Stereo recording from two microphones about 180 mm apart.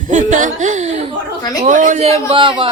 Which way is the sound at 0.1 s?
45° right (ahead or behind).